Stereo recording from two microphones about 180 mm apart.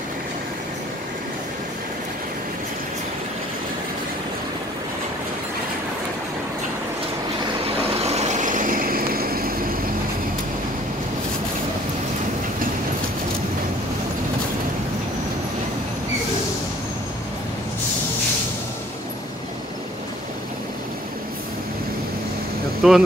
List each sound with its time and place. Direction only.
7.9 s vehicle: 35° right (ahead or behind); by 9.8 s 55° right (ahead or behind)
22.8 s speech: 5° right (ahead or behind)